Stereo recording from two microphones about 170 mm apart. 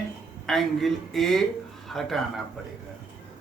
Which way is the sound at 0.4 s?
Centre (ahead or behind).